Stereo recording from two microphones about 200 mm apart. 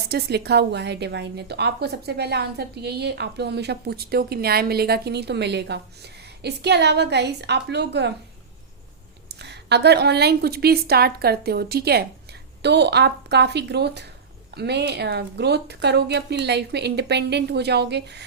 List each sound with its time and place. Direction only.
0.1 s a woman's voice: 55° right (ahead or behind)
9.3 s a woman's voice: 55° right (ahead or behind)